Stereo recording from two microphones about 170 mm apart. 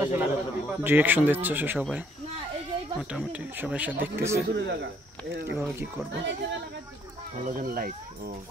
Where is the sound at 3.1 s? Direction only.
10° right (ahead or behind).